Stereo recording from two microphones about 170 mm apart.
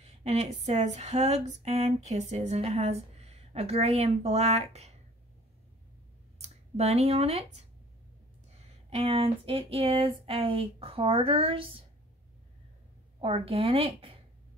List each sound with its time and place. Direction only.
0.0 s speech: 40° right (ahead or behind)
6.3 s speech: 40° right (ahead or behind)
8.9 s speech: 35° right (ahead or behind)
13.2 s speech: 35° right (ahead or behind)